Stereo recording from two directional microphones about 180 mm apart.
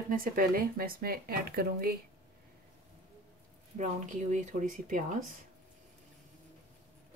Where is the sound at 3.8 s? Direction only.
45° right (ahead or behind).